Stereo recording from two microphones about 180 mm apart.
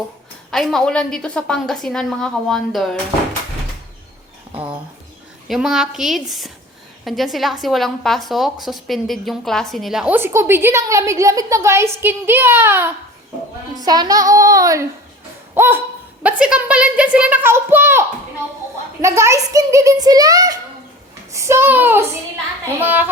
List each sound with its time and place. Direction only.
0.5 s a woman's voice: centre (ahead or behind)
5.5 s a woman's voice: centre (ahead or behind)
19.0 s a child's voice: 15° right (ahead or behind)